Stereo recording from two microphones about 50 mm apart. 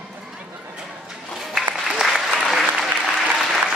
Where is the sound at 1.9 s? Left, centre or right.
Centre.